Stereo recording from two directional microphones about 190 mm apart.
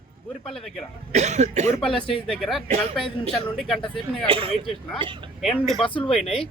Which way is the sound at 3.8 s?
25° left (ahead or behind).